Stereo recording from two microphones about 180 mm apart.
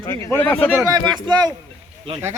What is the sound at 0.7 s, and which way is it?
Speech, 20° right (ahead or behind).